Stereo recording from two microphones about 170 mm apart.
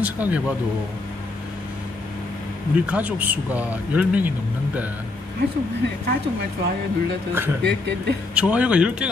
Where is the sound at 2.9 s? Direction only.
10° right (ahead or behind).